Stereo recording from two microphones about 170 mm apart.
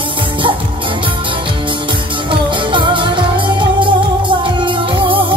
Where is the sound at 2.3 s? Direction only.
30° right (ahead or behind).